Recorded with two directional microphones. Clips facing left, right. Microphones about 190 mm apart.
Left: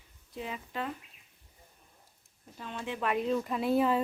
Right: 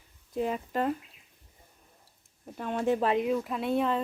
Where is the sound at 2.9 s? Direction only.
30° right (ahead or behind).